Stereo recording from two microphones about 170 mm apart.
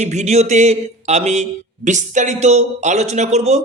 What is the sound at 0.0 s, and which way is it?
Speech, 45° right (ahead or behind).